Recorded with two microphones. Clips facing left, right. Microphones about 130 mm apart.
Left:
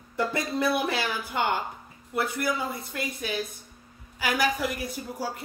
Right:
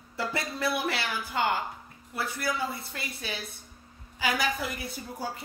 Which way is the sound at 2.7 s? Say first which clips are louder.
Left 6 dB; 15° left (ahead or behind).